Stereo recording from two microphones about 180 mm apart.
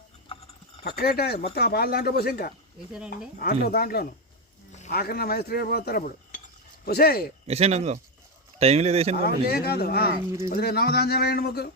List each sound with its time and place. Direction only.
0.9 s speech: 60° left (ahead or behind)
7.4 s speech: 35° right (ahead or behind)
9.2 s speech: 60° left (ahead or behind)